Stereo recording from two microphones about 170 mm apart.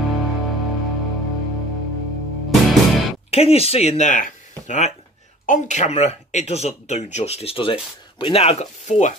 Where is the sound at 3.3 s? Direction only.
35° left (ahead or behind).